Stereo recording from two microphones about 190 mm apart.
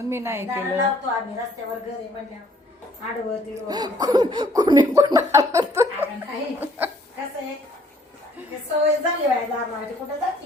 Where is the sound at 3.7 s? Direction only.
20° right (ahead or behind).